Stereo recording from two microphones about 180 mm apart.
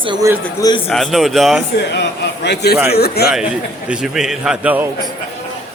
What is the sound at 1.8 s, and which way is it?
A man's voice, 70° left (ahead or behind).